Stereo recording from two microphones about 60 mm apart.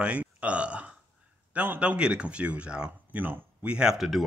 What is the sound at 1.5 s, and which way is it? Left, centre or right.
Speech, right.